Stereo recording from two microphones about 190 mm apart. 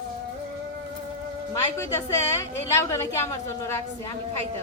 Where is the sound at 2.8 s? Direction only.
15° left (ahead or behind).